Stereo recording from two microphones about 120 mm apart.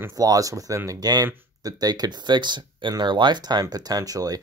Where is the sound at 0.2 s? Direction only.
30° right (ahead or behind).